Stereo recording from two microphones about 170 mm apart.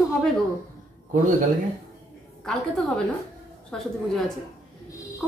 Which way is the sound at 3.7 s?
5° left (ahead or behind).